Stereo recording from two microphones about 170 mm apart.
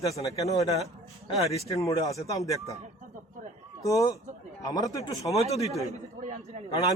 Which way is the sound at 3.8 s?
20° left (ahead or behind).